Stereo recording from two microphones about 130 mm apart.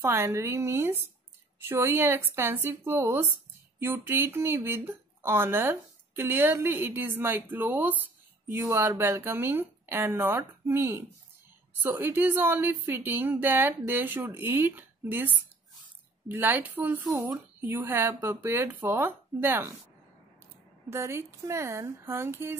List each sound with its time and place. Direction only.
0.0 s speech: 20° right (ahead or behind)
20.9 s speech: 20° right (ahead or behind)